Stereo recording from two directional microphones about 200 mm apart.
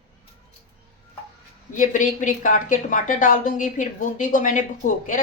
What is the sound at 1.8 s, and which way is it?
Speech, 40° left (ahead or behind).